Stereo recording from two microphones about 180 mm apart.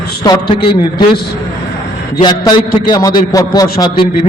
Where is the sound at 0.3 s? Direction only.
25° left (ahead or behind).